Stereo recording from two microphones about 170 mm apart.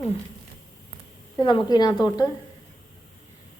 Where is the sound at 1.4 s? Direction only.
30° left (ahead or behind).